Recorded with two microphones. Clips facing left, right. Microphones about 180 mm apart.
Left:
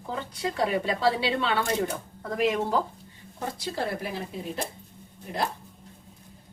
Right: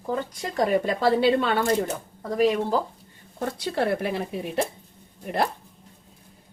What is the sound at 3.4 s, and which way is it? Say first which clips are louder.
Speech: right 5 dB; 65° right (ahead or behind).